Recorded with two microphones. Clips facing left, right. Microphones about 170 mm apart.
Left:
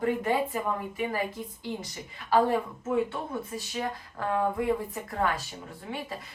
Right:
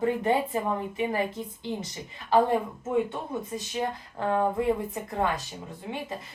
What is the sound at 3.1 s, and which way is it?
Speech, 20° right (ahead or behind).